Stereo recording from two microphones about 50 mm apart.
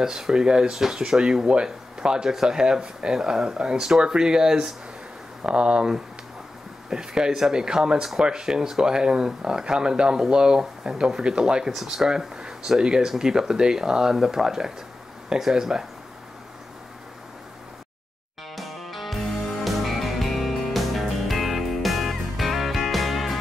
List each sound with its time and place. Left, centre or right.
0.0 s speech: centre
11.7 s speech: centre
18.6 s music: centre